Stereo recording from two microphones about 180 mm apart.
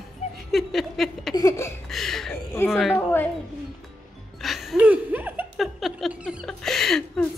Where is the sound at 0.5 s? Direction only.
Centre (ahead or behind).